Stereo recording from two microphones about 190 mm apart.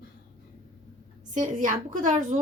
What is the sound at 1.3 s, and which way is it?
A woman's voice, 40° right (ahead or behind).